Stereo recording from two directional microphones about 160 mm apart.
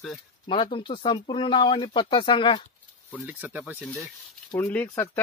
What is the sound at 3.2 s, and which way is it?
Speech, 10° right (ahead or behind).